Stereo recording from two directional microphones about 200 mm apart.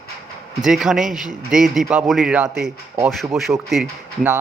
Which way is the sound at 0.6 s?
Centre (ahead or behind).